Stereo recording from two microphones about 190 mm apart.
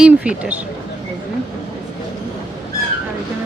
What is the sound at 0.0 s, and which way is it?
Speech, 5° right (ahead or behind).